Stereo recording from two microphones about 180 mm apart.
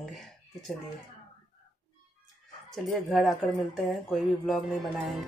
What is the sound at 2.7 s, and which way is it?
Speech, centre (ahead or behind).